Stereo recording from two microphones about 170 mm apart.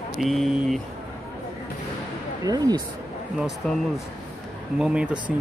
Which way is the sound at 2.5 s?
20° right (ahead or behind).